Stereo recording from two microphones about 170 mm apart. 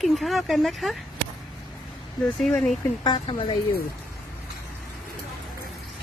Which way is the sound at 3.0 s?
30° left (ahead or behind).